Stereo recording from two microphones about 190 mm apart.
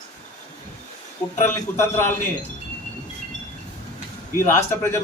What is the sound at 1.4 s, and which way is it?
Speech, 15° left (ahead or behind).